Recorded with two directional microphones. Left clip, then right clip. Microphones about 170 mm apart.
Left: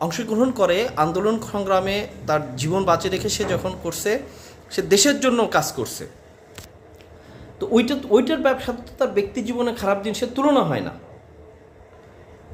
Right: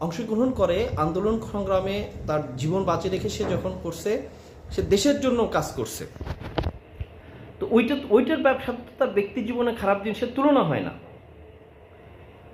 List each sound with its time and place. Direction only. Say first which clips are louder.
0.0 s speech: left 4 dB; 10° left (ahead or behind)
7.6 s a man's voice: left 2 dB; 30° left (ahead or behind)